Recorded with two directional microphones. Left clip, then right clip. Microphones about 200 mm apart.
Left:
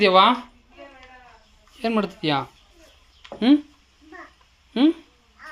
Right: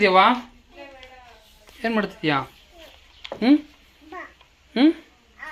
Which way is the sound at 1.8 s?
15° left (ahead or behind).